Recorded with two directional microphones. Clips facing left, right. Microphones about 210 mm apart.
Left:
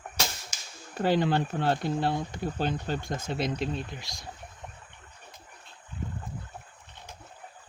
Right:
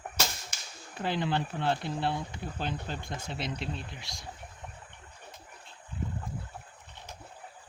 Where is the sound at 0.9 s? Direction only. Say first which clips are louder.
Left 6 dB; 45° left (ahead or behind).